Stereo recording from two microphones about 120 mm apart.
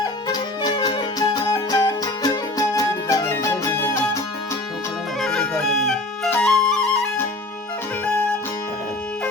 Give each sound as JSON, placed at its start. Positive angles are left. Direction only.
{"t": 0.0, "sound": "music", "side_deg": 35}
{"t": 5.2, "sound": "music", "side_deg": 5}
{"t": 6.3, "sound": "flute", "side_deg": 5}